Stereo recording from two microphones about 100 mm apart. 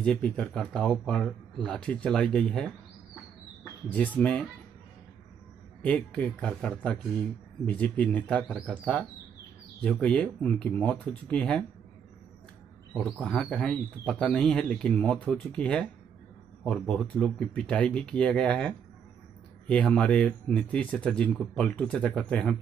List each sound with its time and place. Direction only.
0.0 s speech: 10° left (ahead or behind)
3.9 s speech: 15° left (ahead or behind)
5.9 s speech: 10° left (ahead or behind)
12.9 s speech: 5° left (ahead or behind)